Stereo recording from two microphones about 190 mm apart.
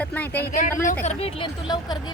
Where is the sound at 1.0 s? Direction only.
35° left (ahead or behind).